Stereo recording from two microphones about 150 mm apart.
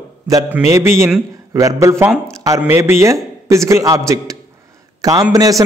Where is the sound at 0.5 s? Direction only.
20° right (ahead or behind).